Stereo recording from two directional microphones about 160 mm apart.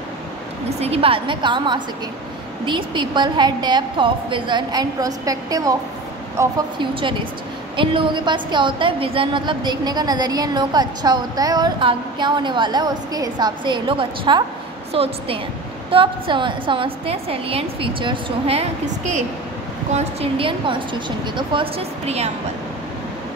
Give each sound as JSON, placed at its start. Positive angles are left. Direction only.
{"t": 0.7, "sound": "a woman's voice", "side_deg": -40}
{"t": 6.8, "sound": "a woman's voice", "side_deg": -30}